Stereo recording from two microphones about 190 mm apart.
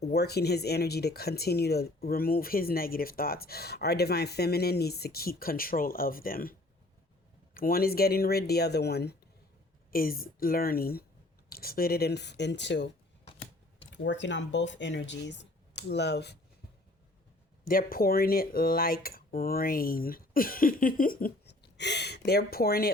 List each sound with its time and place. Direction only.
0.1 s speech: 55° left (ahead or behind)
13.9 s speech: 70° left (ahead or behind)
17.7 s speech: 50° left (ahead or behind)